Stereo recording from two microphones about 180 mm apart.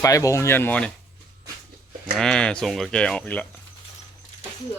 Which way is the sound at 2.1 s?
5° left (ahead or behind).